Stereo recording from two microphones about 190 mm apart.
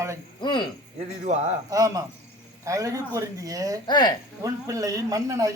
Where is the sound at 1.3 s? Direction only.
35° right (ahead or behind).